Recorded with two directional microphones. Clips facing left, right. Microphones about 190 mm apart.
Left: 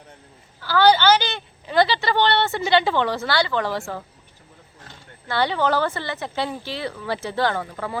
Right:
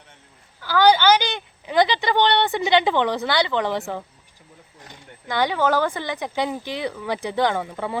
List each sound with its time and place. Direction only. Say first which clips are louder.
0.6 s a woman's voice: even; 15° right (ahead or behind)